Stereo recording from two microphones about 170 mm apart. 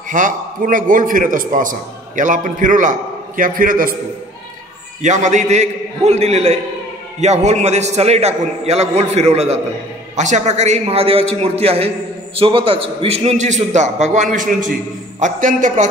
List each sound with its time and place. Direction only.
0.1 s a man's voice: 50° right (ahead or behind)
5.0 s a man's voice: 45° right (ahead or behind)